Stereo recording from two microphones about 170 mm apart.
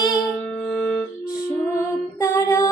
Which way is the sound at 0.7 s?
5° left (ahead or behind).